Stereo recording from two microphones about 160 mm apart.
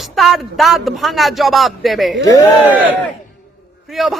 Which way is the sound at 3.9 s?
Centre (ahead or behind).